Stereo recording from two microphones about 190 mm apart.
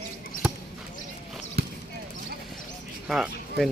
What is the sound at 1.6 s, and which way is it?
Basketball bounce, 55° right (ahead or behind).